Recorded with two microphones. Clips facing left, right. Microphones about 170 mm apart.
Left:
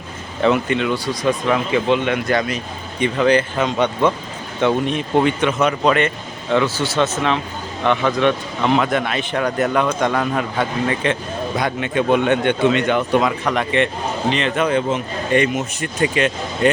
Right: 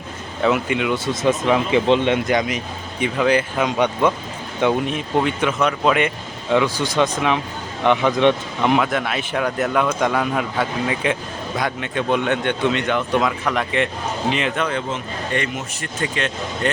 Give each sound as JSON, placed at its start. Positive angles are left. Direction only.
{"t": 0.4, "sound": "speech", "side_deg": -10}
{"t": 0.9, "sound": "speech", "side_deg": -25}
{"t": 3.0, "sound": "a man's voice", "side_deg": -5}
{"t": 8.8, "sound": "a man's voice", "side_deg": 0}
{"t": 14.5, "sound": "speech", "side_deg": 10}